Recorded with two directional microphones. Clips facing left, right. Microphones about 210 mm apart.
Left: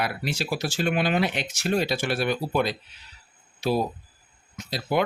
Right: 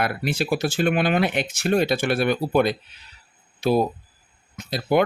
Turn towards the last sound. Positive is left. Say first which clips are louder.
# right 5 dB
turn(degrees=-55)  # may be behind; listen again after turning